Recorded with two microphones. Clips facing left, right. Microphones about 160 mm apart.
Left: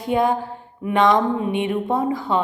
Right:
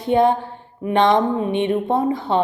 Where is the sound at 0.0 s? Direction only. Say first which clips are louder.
Right 3 dB; 30° right (ahead or behind).